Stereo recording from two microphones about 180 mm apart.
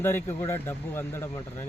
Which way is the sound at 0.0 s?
10° left (ahead or behind).